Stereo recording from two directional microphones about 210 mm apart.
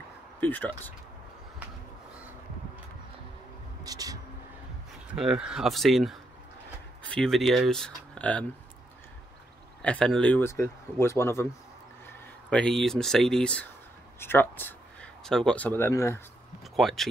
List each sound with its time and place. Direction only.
0.4 s speech: 10° left (ahead or behind)
3.8 s a sound: 15° right (ahead or behind)
5.1 s speech: 5° right (ahead or behind)
9.8 s speech: 5° left (ahead or behind)
12.4 s speech: 5° left (ahead or behind)
16.7 s speech: centre (ahead or behind)